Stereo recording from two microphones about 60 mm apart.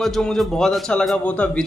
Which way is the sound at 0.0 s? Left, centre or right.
Centre.